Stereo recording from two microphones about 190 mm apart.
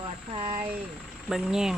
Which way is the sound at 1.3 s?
Centre (ahead or behind).